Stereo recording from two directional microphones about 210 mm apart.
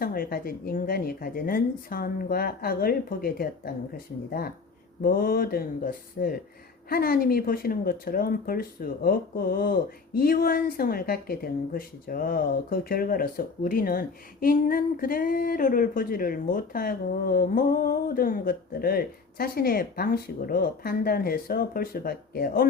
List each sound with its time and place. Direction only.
0.0 s speech: 45° left (ahead or behind)